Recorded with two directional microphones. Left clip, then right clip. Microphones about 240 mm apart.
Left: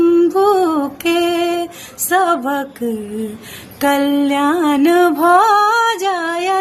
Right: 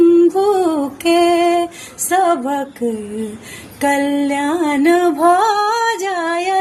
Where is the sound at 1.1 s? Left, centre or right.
Left.